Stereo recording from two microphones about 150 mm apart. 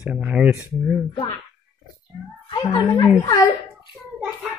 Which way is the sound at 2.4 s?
30° left (ahead or behind).